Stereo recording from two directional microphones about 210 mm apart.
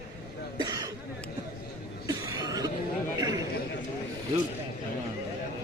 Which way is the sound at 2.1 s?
15° right (ahead or behind).